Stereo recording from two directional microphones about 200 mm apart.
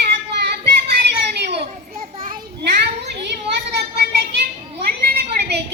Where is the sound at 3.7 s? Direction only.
55° right (ahead or behind).